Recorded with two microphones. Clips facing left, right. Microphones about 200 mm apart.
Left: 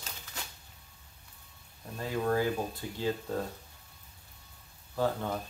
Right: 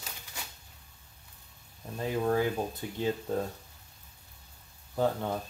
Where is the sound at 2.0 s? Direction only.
20° right (ahead or behind).